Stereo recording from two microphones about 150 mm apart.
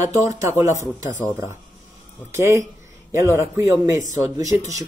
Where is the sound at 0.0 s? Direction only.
20° right (ahead or behind).